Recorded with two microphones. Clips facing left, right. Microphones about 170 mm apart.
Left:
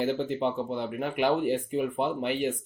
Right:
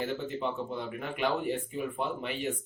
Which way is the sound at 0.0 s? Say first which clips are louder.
Left 6 dB; 70° left (ahead or behind).